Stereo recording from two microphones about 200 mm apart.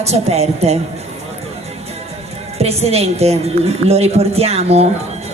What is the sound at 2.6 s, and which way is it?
A woman's voice, 30° right (ahead or behind).